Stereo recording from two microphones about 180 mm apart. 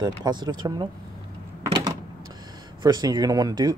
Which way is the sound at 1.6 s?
20° right (ahead or behind).